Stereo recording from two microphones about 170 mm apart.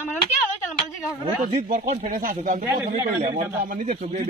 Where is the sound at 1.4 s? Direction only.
50° right (ahead or behind).